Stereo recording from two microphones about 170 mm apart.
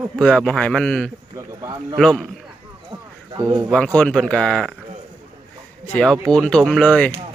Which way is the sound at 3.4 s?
20° right (ahead or behind).